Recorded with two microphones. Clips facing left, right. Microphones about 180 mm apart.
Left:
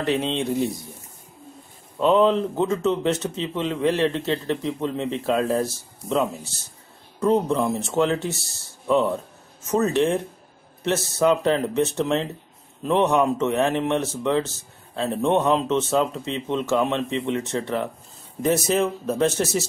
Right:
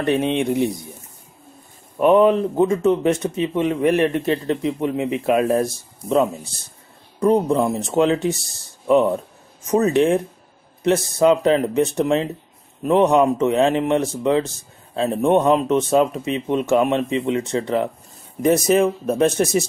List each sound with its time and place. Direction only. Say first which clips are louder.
0.2 s speech: right 4 dB; 15° right (ahead or behind)
2.0 s speech: right 4 dB; 15° right (ahead or behind)